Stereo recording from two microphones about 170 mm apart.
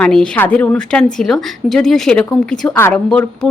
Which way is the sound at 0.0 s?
5° left (ahead or behind).